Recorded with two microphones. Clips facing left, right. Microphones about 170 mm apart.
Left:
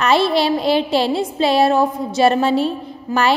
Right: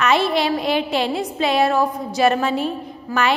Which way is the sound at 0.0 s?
30° left (ahead or behind).